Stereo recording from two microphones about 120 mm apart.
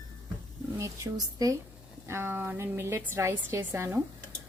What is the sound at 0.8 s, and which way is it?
Speech, 30° right (ahead or behind).